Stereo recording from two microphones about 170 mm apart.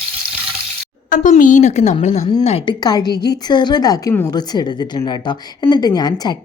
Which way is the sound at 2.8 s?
25° left (ahead or behind).